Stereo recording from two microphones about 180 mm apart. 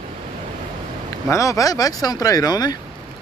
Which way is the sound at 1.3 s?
15° left (ahead or behind).